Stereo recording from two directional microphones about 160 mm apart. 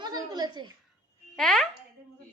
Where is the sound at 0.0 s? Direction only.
25° right (ahead or behind).